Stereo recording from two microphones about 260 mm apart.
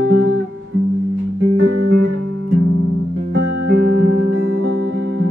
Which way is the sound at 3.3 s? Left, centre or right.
Right.